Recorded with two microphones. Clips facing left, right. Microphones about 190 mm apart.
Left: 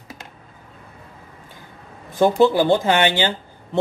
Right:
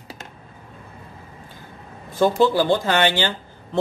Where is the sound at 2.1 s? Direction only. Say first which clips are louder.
Left 2 dB; 15° left (ahead or behind).